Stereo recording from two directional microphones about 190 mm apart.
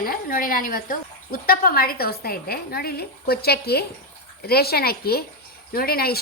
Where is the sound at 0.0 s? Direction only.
50° left (ahead or behind).